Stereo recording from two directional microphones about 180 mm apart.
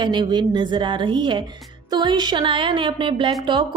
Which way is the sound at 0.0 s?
25° right (ahead or behind).